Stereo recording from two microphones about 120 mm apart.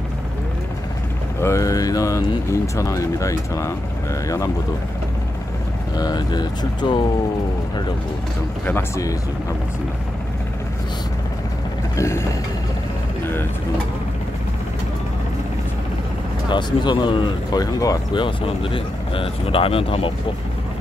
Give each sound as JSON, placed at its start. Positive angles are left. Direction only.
{"t": 1.4, "sound": "speech", "side_deg": 25}
{"t": 5.9, "sound": "speech", "side_deg": 35}
{"t": 8.6, "sound": "speech", "side_deg": 20}
{"t": 12.0, "sound": "speech", "side_deg": 20}
{"t": 13.2, "sound": "vehicle", "side_deg": 20}
{"t": 16.4, "sound": "speech", "side_deg": 40}
{"t": 18.2, "sound": "speech", "side_deg": 45}